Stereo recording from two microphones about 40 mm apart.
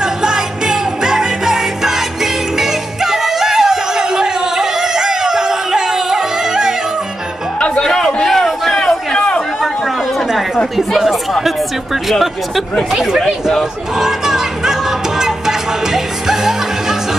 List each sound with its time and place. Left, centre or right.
0.0 s music: centre
7.8 s a sound: centre
8.3 s a sound: centre
10.8 s chatter: centre
12.1 s speech: centre
12.9 s speech: centre
13.6 s music: centre